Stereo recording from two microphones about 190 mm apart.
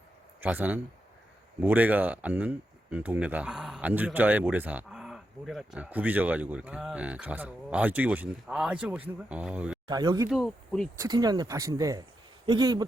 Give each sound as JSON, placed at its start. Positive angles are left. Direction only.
{"t": 0.4, "sound": "speech", "side_deg": -10}
{"t": 9.8, "sound": "speech", "side_deg": -20}
{"t": 10.2, "sound": "speech", "side_deg": 0}
{"t": 11.0, "sound": "speech", "side_deg": -20}